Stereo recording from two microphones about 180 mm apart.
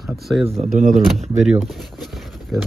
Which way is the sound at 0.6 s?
45° right (ahead or behind).